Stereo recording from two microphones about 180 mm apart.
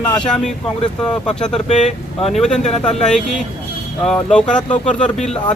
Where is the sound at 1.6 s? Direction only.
40° left (ahead or behind).